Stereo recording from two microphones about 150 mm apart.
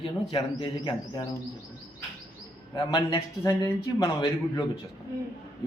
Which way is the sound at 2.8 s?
25° left (ahead or behind).